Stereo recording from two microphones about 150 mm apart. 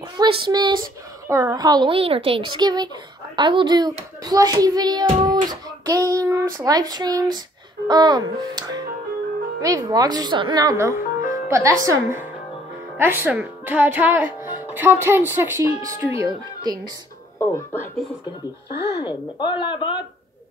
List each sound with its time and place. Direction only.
0.2 s a child's voice: 30° right (ahead or behind)
17.4 s speech: 15° left (ahead or behind)
18.7 s speech: 90° left
19.0 s speech: 30° left (ahead or behind)